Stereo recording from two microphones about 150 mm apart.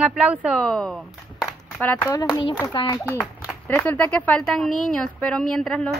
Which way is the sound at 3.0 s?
10° right (ahead or behind).